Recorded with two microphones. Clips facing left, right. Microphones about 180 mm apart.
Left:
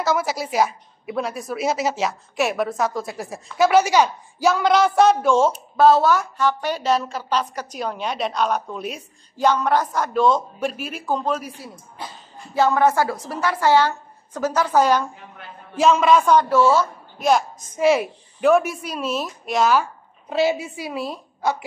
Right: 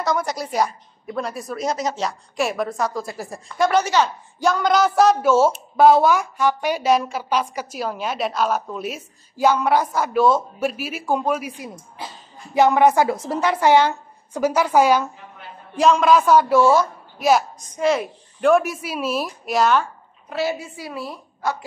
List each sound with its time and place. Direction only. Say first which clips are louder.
0.0 s a woman's voice: left 1 dB; 5° left (ahead or behind)
15.7 s a woman's voice: even; centre (ahead or behind)
17.7 s a woman's voice: left 2 dB; 5° left (ahead or behind)
20.2 s a woman's voice: left 4 dB; 20° left (ahead or behind)